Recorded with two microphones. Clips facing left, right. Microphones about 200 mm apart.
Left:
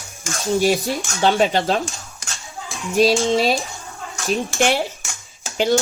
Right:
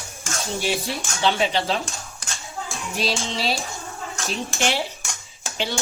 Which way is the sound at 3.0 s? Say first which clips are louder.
Left 11 dB; 50° left (ahead or behind).